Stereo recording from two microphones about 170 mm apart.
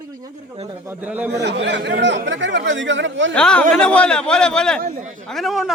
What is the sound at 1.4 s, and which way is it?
Speech, 90° right.